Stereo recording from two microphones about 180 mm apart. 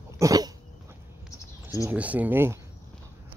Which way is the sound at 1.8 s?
10° right (ahead or behind).